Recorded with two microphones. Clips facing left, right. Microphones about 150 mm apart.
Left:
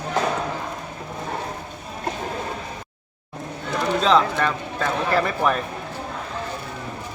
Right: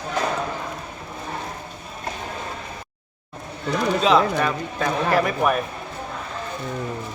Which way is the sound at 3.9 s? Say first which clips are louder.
Even; 10° right (ahead or behind).